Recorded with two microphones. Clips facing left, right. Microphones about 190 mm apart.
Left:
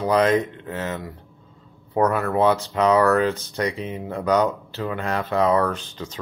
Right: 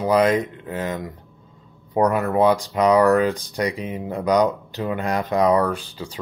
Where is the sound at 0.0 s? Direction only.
10° right (ahead or behind).